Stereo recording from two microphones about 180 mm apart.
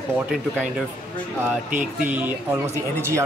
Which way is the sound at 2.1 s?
10° right (ahead or behind).